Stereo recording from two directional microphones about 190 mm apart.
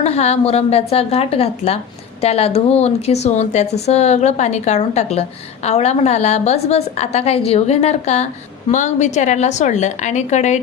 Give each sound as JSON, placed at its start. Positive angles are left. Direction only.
{"t": 0.0, "sound": "a woman's voice", "side_deg": 35}